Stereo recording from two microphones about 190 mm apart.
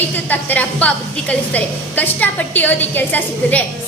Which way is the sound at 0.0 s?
10° left (ahead or behind).